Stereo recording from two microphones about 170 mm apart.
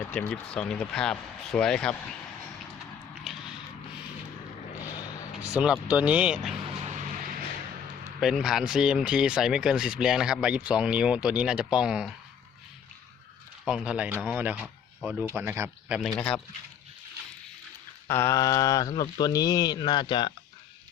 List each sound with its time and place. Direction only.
0.1 s speech: 5° left (ahead or behind)
5.5 s speech: 5° right (ahead or behind)
6.8 s music: 45° right (ahead or behind)
8.2 s speech: centre (ahead or behind)
13.7 s speech: 5° right (ahead or behind)
16.0 s speech: 5° left (ahead or behind)
18.1 s speech: 15° left (ahead or behind)